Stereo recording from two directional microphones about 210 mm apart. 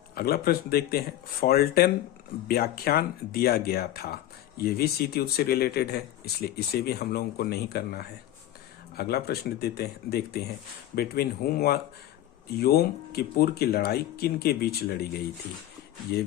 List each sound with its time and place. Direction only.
0.1 s speech: 45° left (ahead or behind)